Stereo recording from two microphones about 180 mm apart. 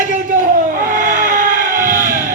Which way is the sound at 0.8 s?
50° right (ahead or behind).